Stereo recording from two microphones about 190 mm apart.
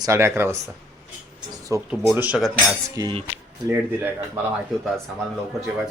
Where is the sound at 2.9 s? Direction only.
20° right (ahead or behind).